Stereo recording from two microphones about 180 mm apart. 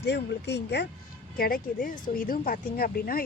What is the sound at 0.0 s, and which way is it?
Speech, 70° left (ahead or behind).